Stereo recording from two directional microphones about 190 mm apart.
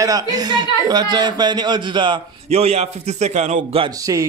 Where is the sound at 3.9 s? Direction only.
15° right (ahead or behind).